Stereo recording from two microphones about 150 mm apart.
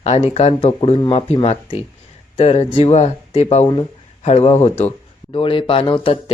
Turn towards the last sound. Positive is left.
turn(degrees=35)  # may be behind; listen again after turning